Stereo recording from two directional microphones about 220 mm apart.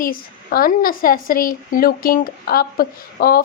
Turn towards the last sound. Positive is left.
turn(degrees=40)  # may be behind; listen again after turning